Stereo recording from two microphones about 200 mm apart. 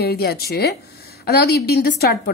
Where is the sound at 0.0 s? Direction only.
50° left (ahead or behind).